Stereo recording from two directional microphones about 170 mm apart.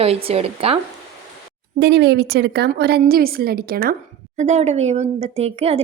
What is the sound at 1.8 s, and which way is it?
A woman's voice, 90° right.